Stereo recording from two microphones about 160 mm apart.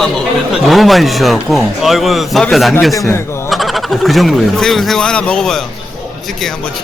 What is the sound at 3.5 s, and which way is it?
Speech, centre (ahead or behind).